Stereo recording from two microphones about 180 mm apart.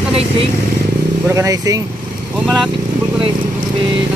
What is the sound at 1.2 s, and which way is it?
Speech, 15° right (ahead or behind).